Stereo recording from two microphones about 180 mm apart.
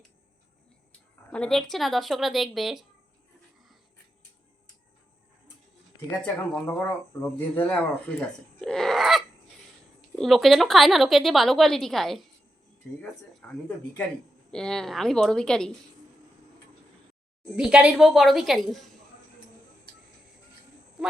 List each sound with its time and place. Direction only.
1.3 s a woman's voice: 5° left (ahead or behind)
6.1 s a woman's voice: 10° left (ahead or behind)
17.6 s a woman's voice: 5° right (ahead or behind)